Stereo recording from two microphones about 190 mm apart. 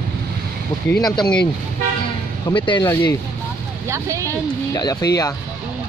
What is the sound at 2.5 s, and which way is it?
Speech, 25° left (ahead or behind).